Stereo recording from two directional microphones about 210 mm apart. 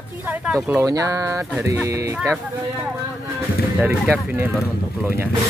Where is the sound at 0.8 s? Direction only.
15° right (ahead or behind).